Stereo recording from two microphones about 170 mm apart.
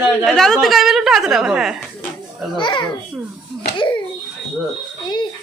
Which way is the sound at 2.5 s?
25° left (ahead or behind).